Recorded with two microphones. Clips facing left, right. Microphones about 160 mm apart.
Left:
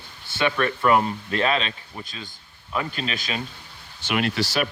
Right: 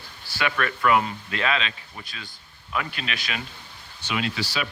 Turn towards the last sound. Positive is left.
turn(degrees=60)  # may be behind; listen again after turning